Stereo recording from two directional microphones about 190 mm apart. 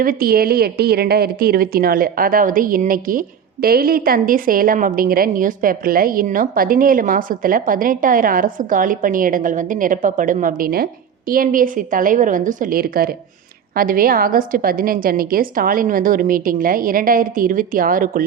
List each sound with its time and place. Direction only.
0.0 s a woman's voice: 50° right (ahead or behind)